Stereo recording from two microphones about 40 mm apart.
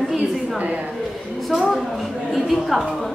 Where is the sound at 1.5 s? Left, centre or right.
Centre.